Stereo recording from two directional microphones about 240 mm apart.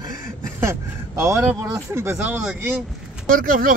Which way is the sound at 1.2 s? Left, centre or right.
Centre.